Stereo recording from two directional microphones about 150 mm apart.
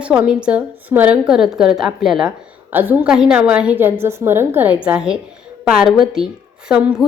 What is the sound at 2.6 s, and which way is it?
A woman's voice, 15° right (ahead or behind).